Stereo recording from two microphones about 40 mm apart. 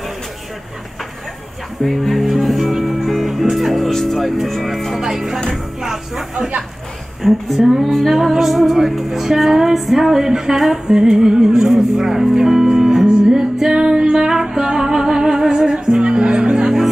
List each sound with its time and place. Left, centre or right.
1.8 s speech: centre
3.1 s music: centre
3.9 s a woman's voice: centre
5.0 s music: centre
7.2 s a woman's voice: centre
8.2 s music: centre; by 16.7 s right